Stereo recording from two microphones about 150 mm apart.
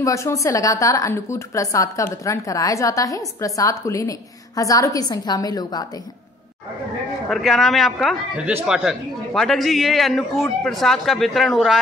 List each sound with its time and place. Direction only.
0.0 s a woman's voice: 20° left (ahead or behind)
7.2 s a man's voice: centre (ahead or behind)